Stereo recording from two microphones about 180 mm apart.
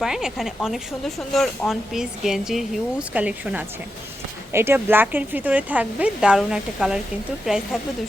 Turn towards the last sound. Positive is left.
turn(degrees=-5)  # may be behind; listen again after turning